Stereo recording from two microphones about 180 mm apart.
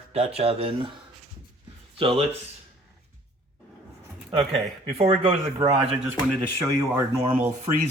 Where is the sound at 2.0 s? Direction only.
30° right (ahead or behind).